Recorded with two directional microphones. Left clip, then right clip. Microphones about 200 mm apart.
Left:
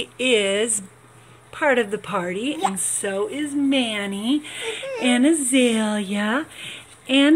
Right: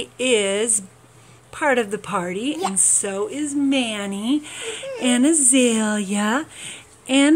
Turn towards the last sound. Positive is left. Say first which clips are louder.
# even
turn(degrees=-5)  # may be behind; listen again after turning